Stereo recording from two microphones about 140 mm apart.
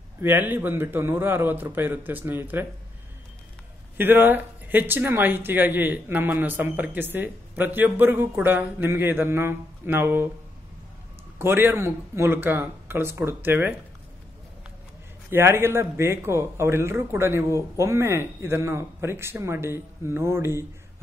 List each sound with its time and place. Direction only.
0.2 s speech: 15° right (ahead or behind)
4.0 s speech: 15° right (ahead or behind)
11.3 s speech: 15° right (ahead or behind)
15.2 s speech: 15° right (ahead or behind)